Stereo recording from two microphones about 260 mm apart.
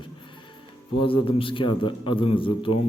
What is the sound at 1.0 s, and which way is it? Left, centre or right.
Speech, centre.